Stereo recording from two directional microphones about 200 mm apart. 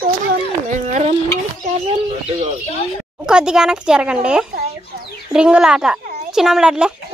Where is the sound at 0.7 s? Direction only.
35° right (ahead or behind).